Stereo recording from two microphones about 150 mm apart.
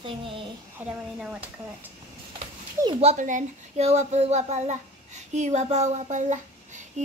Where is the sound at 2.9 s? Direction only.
40° right (ahead or behind).